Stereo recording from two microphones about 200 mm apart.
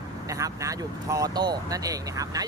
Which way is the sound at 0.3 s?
15° right (ahead or behind).